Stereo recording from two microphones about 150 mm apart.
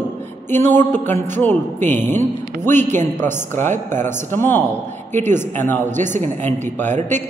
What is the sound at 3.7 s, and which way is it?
Speech, 55° right (ahead or behind).